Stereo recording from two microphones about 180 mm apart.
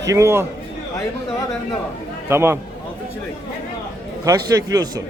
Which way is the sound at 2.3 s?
15° right (ahead or behind).